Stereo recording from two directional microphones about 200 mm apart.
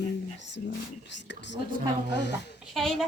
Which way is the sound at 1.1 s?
60° left (ahead or behind).